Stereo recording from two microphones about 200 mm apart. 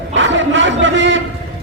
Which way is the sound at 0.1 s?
70° right (ahead or behind).